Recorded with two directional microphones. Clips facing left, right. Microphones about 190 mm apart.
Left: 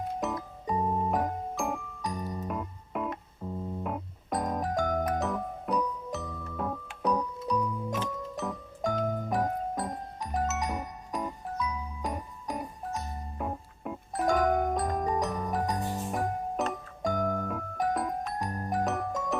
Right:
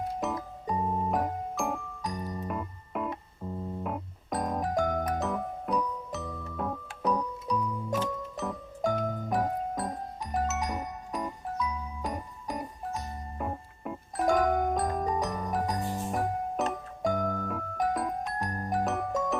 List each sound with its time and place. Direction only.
0.2 s music: centre (ahead or behind)